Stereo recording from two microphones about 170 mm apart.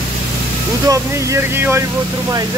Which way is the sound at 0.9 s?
15° right (ahead or behind).